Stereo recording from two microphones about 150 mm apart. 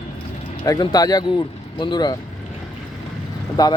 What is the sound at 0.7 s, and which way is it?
Speech, 25° left (ahead or behind).